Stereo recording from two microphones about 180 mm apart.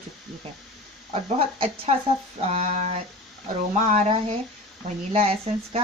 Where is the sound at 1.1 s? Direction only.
35° right (ahead or behind).